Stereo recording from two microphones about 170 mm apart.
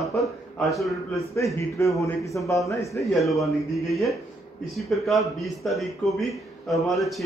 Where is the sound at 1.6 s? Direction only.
20° left (ahead or behind).